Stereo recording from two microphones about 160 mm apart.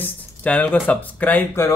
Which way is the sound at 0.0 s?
10° left (ahead or behind).